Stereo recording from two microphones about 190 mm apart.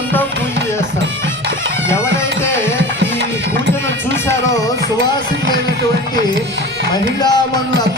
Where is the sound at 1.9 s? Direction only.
15° left (ahead or behind).